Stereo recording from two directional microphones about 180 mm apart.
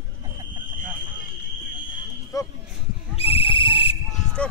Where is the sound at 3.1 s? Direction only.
30° left (ahead or behind).